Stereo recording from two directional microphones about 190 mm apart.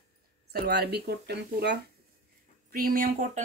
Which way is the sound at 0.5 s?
55° right (ahead or behind).